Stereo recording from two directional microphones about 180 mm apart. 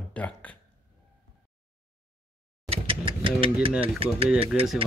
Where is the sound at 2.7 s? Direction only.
30° right (ahead or behind).